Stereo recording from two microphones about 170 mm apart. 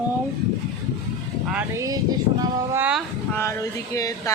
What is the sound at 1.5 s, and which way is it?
Speech, 15° right (ahead or behind).